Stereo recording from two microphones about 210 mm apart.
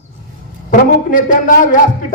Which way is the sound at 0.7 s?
40° left (ahead or behind).